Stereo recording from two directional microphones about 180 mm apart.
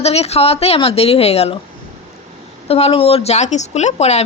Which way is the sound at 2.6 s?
35° left (ahead or behind).